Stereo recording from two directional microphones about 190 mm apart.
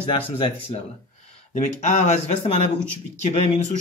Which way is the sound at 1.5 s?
40° left (ahead or behind).